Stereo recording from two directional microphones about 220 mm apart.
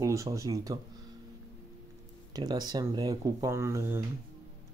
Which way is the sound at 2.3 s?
20° right (ahead or behind).